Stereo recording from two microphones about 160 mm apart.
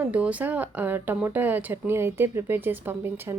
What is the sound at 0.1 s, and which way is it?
Speech, 10° right (ahead or behind).